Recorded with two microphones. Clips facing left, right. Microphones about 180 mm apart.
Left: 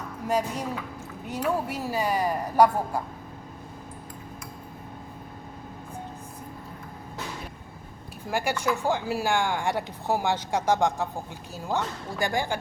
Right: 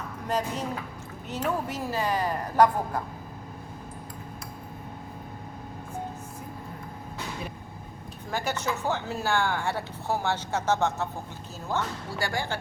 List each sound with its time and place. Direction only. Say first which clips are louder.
0.3 s speech: left 2 dB; 10° left (ahead or behind)
8.3 s speech: left 3 dB; 10° left (ahead or behind)
12.2 s speech: left 4 dB; 15° left (ahead or behind)